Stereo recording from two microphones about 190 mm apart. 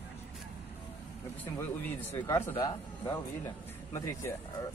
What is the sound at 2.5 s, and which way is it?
A man's voice, 25° left (ahead or behind).